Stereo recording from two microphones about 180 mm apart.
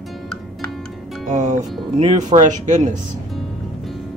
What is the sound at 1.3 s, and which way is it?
Speech, 40° right (ahead or behind).